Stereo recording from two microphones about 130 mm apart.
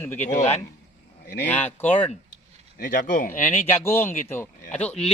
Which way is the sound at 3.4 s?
20° left (ahead or behind).